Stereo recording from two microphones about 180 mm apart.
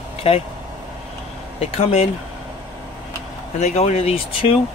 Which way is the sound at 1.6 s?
35° left (ahead or behind).